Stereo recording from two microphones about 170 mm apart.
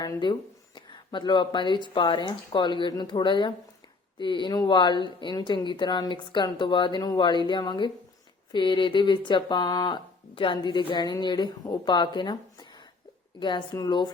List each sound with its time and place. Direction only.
0.0 s speech: 25° left (ahead or behind)